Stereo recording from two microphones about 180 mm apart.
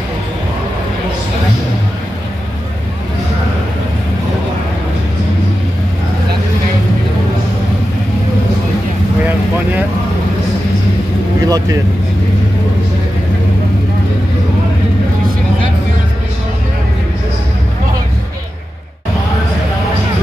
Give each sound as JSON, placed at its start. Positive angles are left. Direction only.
{"t": 9.2, "sound": "vehicle", "side_deg": -10}
{"t": 11.4, "sound": "vehicle", "side_deg": -20}